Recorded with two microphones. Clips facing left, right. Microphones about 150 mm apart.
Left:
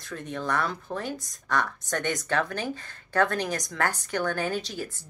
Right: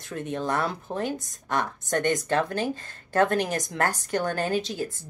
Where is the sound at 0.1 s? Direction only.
25° right (ahead or behind).